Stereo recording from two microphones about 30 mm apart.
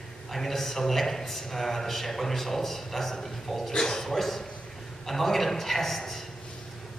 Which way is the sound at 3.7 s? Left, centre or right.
Centre.